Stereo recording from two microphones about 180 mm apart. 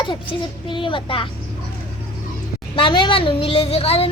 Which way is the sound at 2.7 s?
25° left (ahead or behind).